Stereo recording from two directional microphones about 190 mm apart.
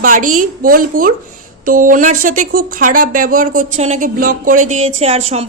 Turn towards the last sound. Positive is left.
turn(degrees=-30)  # may be behind; listen again after turning